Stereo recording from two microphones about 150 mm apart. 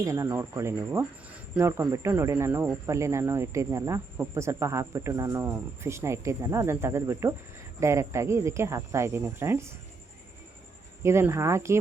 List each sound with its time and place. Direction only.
0.0 s speech: 20° right (ahead or behind)
11.0 s speech: 15° right (ahead or behind)